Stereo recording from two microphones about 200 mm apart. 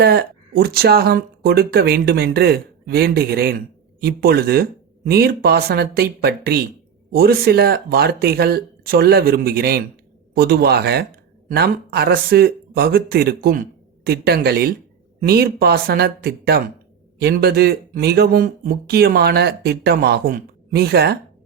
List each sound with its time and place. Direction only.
0.0 s speech: 50° right (ahead or behind)